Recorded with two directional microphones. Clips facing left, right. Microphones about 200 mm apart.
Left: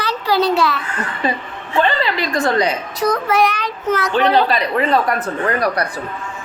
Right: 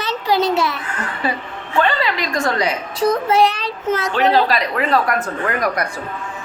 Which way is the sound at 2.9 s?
30° right (ahead or behind).